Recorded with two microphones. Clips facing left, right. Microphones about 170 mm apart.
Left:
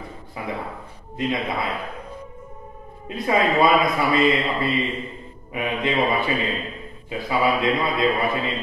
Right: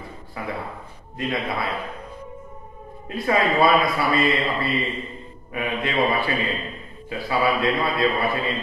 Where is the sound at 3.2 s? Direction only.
20° left (ahead or behind).